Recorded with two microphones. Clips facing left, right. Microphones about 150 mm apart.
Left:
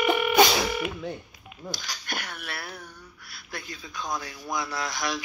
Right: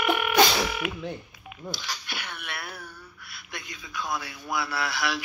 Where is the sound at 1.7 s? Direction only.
45° left (ahead or behind).